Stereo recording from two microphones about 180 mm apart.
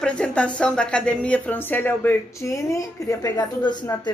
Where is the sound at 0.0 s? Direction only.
5° left (ahead or behind).